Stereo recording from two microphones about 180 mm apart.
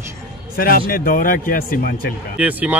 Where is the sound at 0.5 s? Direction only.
55° left (ahead or behind).